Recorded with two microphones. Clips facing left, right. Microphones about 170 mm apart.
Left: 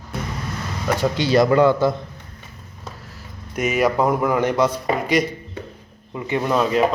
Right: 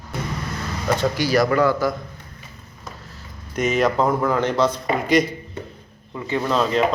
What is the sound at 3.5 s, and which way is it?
Speech, 10° left (ahead or behind).